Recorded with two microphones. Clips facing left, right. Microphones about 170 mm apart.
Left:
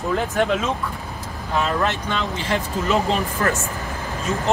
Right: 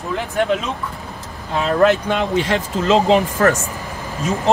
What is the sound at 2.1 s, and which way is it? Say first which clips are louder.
Speech: right 6 dB; 90° right.